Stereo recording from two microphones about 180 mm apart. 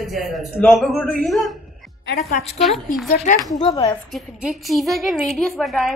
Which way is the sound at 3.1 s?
50° left (ahead or behind).